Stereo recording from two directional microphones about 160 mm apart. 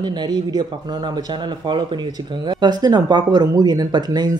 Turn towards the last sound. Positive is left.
turn(degrees=-25)  # may be behind; listen again after turning